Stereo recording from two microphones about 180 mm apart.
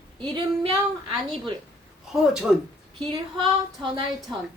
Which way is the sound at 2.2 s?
Centre (ahead or behind).